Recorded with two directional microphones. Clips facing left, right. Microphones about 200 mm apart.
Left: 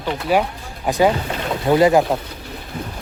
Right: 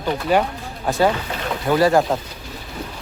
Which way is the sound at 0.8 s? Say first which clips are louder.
Left 2 dB; 15° left (ahead or behind).